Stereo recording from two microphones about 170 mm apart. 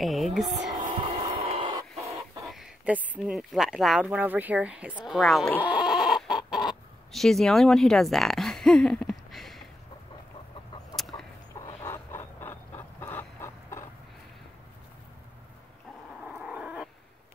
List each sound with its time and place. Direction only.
0.0 s speech: centre (ahead or behind)
0.9 s a sound: 35° right (ahead or behind)
2.4 s speech: centre (ahead or behind)
5.0 s chicken: centre (ahead or behind)
11.0 s chicken: centre (ahead or behind)
11.6 s chicken: 15° left (ahead or behind)
16.3 s dog: 5° right (ahead or behind)